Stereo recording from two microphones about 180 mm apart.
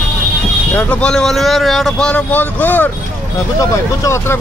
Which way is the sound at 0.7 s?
5° left (ahead or behind).